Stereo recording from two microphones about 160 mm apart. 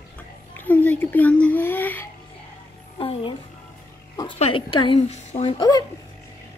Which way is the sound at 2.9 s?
35° left (ahead or behind).